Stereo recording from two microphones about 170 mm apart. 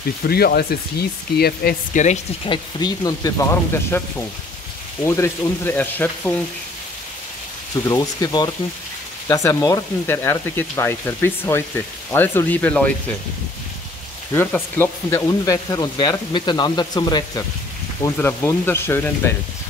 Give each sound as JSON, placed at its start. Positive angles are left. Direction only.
{"t": 0.3, "sound": "speech", "side_deg": 65}
{"t": 2.0, "sound": "speech", "side_deg": 30}
{"t": 5.0, "sound": "speech", "side_deg": 15}
{"t": 7.8, "sound": "speech", "side_deg": 20}
{"t": 14.3, "sound": "speech", "side_deg": 10}
{"t": 18.1, "sound": "speech", "side_deg": 15}